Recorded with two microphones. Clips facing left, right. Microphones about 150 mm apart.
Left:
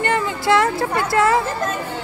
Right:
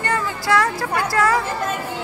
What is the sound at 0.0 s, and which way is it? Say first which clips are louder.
A woman's voice: left 3 dB; 25° left (ahead or behind).